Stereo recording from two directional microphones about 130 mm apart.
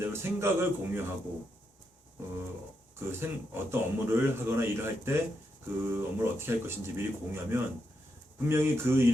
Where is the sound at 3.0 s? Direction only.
20° right (ahead or behind).